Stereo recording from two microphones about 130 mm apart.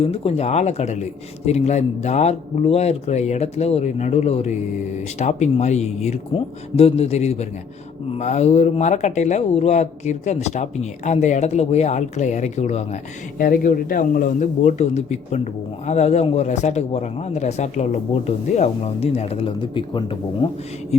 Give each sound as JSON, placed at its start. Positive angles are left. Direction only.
{"t": 0.0, "sound": "a man's voice", "side_deg": 50}
{"t": 13.4, "sound": "a man's voice", "side_deg": 90}